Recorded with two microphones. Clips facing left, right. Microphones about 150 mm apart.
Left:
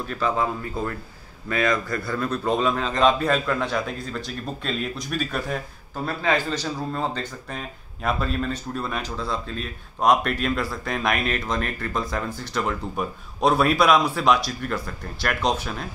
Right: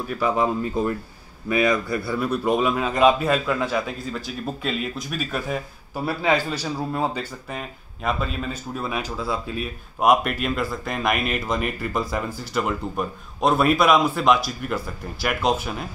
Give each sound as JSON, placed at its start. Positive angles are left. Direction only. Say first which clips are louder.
{"t": 0.0, "sound": "a man's voice", "louder": "right 2 dB", "side_deg": -10}